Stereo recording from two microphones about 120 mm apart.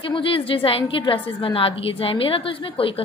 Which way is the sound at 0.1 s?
45° left (ahead or behind).